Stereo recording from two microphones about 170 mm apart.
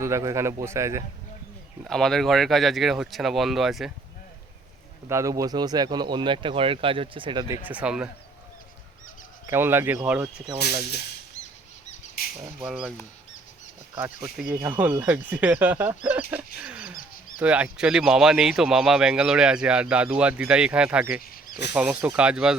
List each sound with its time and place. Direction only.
0.0 s speech: 15° right (ahead or behind)
1.8 s speech: 5° left (ahead or behind)
5.0 s speech: 15° right (ahead or behind)
7.4 s speech: 15° right (ahead or behind)
9.5 s speech: 15° right (ahead or behind)
12.5 s speech: 5° right (ahead or behind)
14.0 s speech: 10° right (ahead or behind)
16.6 s wild animals: 5° right (ahead or behind)
16.9 s wild animals: 55° left (ahead or behind)
17.4 s speech: 5° right (ahead or behind)
21.2 s a sound: 60° left (ahead or behind)
21.8 s speech: 10° right (ahead or behind)